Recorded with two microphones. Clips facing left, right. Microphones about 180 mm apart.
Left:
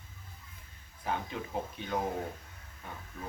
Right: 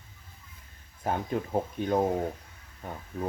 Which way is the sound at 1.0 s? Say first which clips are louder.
Right 6 dB; 45° right (ahead or behind).